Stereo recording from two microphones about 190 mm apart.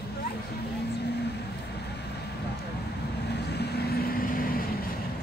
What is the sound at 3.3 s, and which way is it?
Vehicle, 60° left (ahead or behind).